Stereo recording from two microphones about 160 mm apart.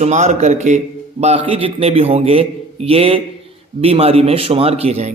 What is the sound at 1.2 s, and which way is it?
A man's voice, 35° right (ahead or behind).